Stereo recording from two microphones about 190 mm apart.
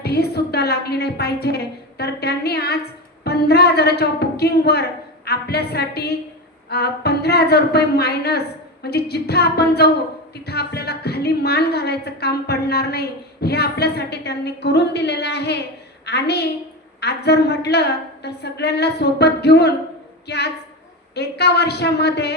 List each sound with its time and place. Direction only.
0.0 s a woman's voice: 60° left (ahead or behind)